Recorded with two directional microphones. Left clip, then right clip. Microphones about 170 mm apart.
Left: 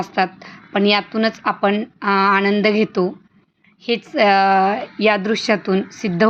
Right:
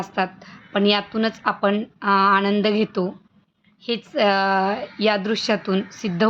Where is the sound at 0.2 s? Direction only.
10° left (ahead or behind).